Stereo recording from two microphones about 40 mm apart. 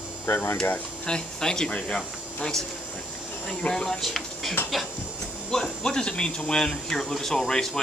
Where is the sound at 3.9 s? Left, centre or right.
Centre.